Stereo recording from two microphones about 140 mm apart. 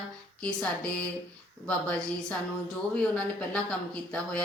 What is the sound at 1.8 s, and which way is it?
Speech, 10° left (ahead or behind).